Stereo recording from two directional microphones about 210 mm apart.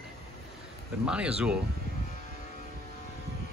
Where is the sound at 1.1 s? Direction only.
5° right (ahead or behind).